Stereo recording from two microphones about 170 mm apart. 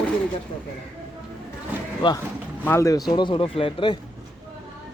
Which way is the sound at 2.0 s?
30° left (ahead or behind).